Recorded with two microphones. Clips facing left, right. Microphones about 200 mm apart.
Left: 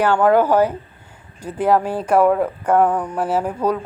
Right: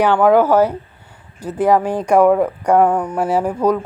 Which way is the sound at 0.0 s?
15° right (ahead or behind).